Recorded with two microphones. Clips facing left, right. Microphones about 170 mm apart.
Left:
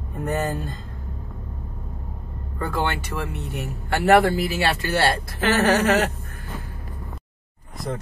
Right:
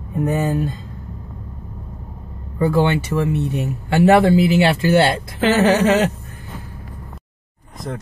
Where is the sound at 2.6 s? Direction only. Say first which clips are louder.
Right 9 dB; 15° right (ahead or behind).